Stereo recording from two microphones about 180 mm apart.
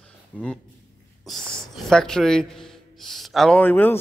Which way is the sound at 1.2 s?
Centre (ahead or behind).